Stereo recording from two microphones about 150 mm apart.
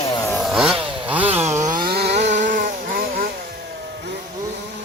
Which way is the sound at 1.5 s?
55° right (ahead or behind).